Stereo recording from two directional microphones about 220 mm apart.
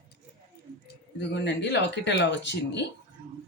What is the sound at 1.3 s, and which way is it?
A woman's voice, 50° left (ahead or behind).